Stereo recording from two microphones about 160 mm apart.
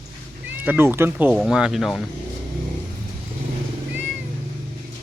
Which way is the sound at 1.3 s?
Centre (ahead or behind).